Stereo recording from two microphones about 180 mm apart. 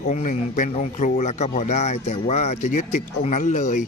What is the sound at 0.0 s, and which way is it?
A man's voice, 40° left (ahead or behind).